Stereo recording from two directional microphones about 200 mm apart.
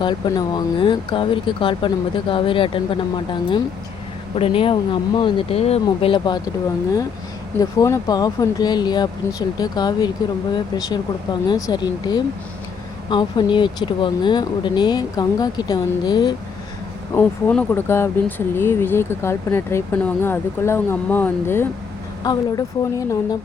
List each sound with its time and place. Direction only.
0.0 s speech: 20° left (ahead or behind)
4.4 s speech: 25° left (ahead or behind)
7.6 s speech: 20° left (ahead or behind)
17.2 s speech: 10° left (ahead or behind)